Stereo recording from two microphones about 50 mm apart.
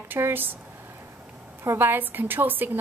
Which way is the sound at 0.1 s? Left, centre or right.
Right.